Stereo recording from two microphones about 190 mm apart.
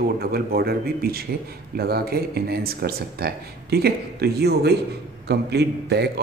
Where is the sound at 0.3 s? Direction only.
55° right (ahead or behind).